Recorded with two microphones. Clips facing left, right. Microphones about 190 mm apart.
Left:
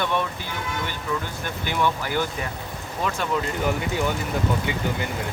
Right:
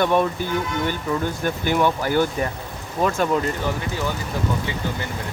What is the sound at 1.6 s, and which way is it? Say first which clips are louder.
Speech: right 4 dB; 45° right (ahead or behind).